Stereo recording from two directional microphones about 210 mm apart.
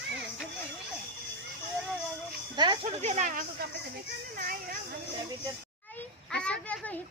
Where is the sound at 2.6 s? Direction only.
25° right (ahead or behind); by 5.0 s 45° right (ahead or behind).